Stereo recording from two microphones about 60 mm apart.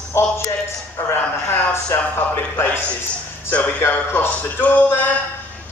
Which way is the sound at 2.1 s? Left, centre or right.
Left.